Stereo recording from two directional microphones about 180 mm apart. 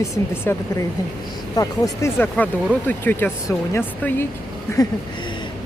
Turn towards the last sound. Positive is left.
turn(degrees=15)  # may be behind; listen again after turning